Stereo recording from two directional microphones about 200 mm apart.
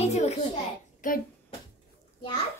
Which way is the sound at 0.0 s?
35° left (ahead or behind).